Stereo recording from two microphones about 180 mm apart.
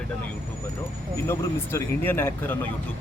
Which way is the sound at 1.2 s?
15° left (ahead or behind).